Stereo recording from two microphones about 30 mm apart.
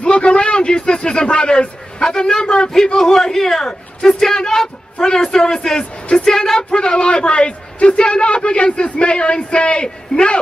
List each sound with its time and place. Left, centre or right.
0.0 s a man's voice: left
3.0 s a man's voice: centre
3.6 s speech: left
4.2 s a man's voice: left
6.7 s a man's voice: left